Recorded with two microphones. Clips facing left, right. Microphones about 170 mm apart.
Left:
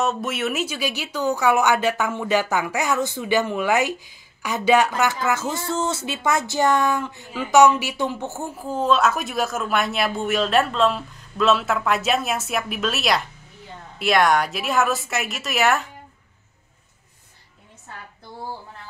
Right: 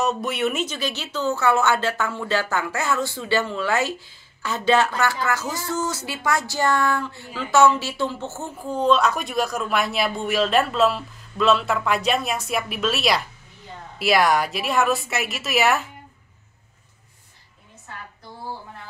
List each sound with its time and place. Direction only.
0.0 s speech: centre (ahead or behind)
8.6 s speech: 5° left (ahead or behind)